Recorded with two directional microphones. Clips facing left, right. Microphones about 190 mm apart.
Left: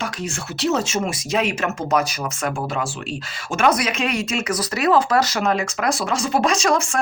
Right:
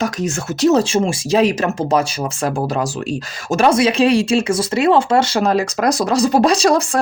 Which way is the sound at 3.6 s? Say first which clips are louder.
Right 7 dB; 30° right (ahead or behind).